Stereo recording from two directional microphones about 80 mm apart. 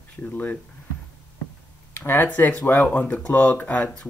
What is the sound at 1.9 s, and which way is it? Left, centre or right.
Speech, left.